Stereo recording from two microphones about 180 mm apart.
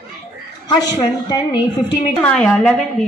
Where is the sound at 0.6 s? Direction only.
25° left (ahead or behind).